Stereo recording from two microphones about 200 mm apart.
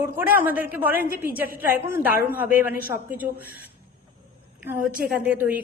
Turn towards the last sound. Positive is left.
turn(degrees=-5)  # may be behind; listen again after turning